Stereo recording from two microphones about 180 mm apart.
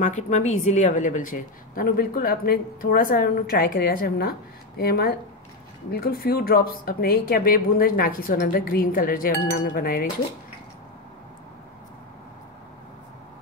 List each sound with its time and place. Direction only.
0.0 s a woman's voice: 40° left (ahead or behind)